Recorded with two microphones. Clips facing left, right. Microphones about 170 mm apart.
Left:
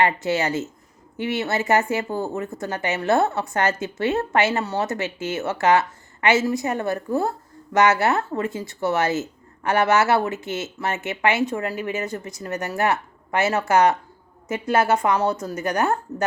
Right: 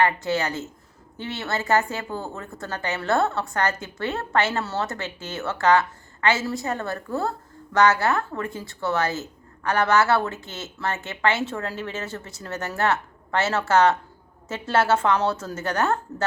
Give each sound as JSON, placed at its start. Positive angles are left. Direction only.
{"t": 0.0, "sound": "a woman's voice", "side_deg": 20}